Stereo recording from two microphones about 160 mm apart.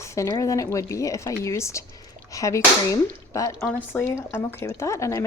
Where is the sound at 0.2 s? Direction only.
20° left (ahead or behind).